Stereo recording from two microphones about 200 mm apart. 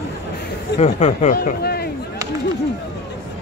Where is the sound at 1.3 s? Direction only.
50° left (ahead or behind).